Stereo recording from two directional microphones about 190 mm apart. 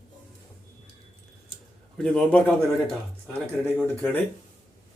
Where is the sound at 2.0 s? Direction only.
5° left (ahead or behind).